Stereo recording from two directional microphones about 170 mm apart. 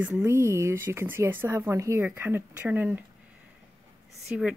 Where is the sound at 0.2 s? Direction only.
15° right (ahead or behind).